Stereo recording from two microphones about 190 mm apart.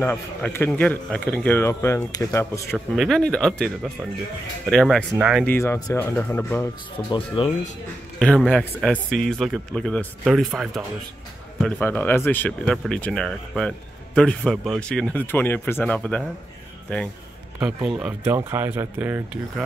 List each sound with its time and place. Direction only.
0.0 s speech: 10° left (ahead or behind)
3.0 s speech: 5° left (ahead or behind)
5.5 s speech: 10° left (ahead or behind)
7.1 s speech: 25° left (ahead or behind)
8.2 s speech: 5° left (ahead or behind)
17.8 s speech: 5° right (ahead or behind)